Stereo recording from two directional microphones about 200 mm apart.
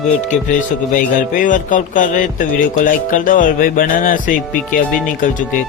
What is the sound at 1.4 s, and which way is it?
Speech, 40° left (ahead or behind).